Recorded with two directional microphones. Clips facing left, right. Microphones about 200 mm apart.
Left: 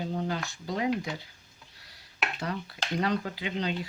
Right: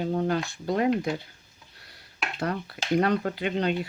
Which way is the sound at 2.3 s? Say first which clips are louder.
Right 4 dB; 55° right (ahead or behind).